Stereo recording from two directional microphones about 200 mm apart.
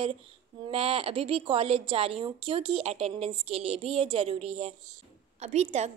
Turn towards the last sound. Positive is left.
turn(degrees=-35)  # may be behind; listen again after turning